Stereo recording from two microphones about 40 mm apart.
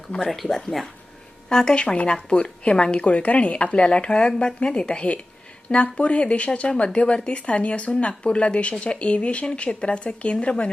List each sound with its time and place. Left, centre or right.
0.2 s speech: centre
1.5 s a woman's voice: centre